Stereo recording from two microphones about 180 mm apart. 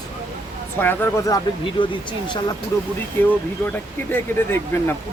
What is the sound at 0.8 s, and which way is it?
Speech, 10° left (ahead or behind).